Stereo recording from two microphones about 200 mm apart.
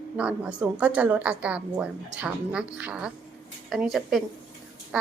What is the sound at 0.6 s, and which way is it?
A woman's voice, 5° right (ahead or behind).